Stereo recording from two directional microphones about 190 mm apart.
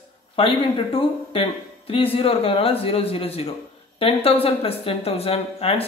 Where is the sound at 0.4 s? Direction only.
30° left (ahead or behind).